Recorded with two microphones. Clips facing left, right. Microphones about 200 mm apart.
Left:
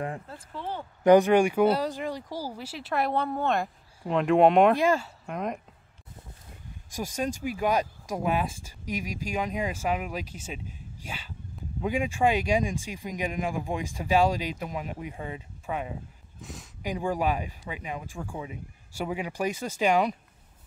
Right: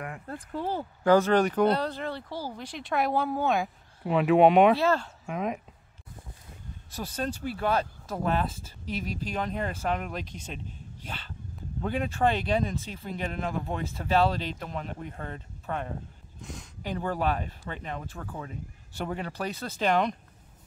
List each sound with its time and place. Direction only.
0.3 s speech: 50° right (ahead or behind)
1.0 s speech: 15° left (ahead or behind); by 4.7 s centre (ahead or behind)
4.7 s speech: 10° left (ahead or behind)
6.9 s speech: 10° left (ahead or behind)
16.8 s speech: 10° left (ahead or behind)